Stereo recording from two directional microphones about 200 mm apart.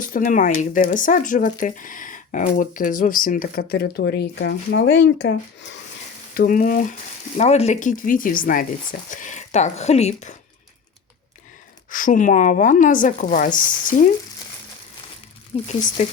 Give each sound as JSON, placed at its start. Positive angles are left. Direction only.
{"t": 0.0, "sound": "speech", "side_deg": 40}
{"t": 6.3, "sound": "speech", "side_deg": 45}
{"t": 7.3, "sound": "speech", "side_deg": 35}
{"t": 11.9, "sound": "speech", "side_deg": 40}
{"t": 15.5, "sound": "speech", "side_deg": 30}